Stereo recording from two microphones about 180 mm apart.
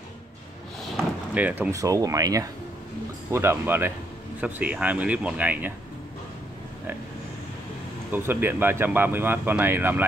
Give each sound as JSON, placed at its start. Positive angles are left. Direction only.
{"t": 1.3, "sound": "speech", "side_deg": -10}
{"t": 8.1, "sound": "speech", "side_deg": -10}